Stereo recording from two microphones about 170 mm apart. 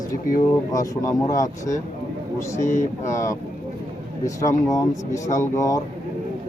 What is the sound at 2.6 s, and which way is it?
Speech, 45° left (ahead or behind).